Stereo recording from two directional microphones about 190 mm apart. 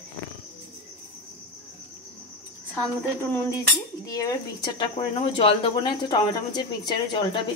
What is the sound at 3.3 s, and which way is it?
Speech, 10° left (ahead or behind).